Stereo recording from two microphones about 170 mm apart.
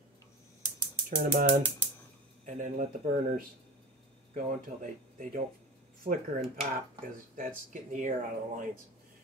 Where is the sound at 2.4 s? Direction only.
50° right (ahead or behind).